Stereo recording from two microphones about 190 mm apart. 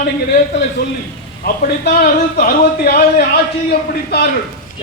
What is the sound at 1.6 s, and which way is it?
A man's voice, 55° left (ahead or behind).